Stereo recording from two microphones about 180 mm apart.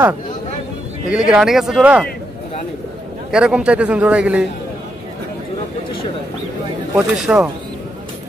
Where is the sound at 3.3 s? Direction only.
5° right (ahead or behind).